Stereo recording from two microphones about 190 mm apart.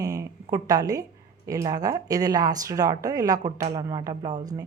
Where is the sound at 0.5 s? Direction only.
20° right (ahead or behind).